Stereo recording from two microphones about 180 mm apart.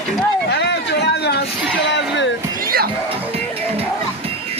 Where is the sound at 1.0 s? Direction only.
70° left (ahead or behind).